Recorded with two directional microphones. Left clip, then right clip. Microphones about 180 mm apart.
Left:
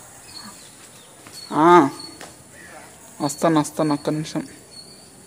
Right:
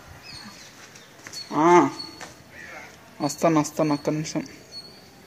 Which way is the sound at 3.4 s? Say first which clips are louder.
Left 2 dB; centre (ahead or behind).